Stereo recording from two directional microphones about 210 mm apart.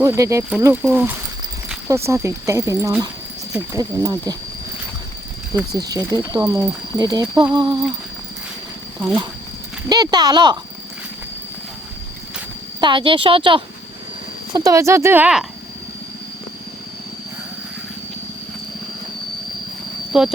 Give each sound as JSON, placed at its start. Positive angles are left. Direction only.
{"t": 0.0, "sound": "speech", "side_deg": -15}
{"t": 5.5, "sound": "speech", "side_deg": -15}
{"t": 9.0, "sound": "speech", "side_deg": -5}
{"t": 9.9, "sound": "speech", "side_deg": -20}
{"t": 12.8, "sound": "speech", "side_deg": -25}
{"t": 20.1, "sound": "speech", "side_deg": -5}